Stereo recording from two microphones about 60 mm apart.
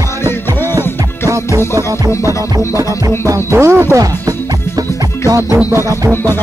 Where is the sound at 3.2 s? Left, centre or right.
Right.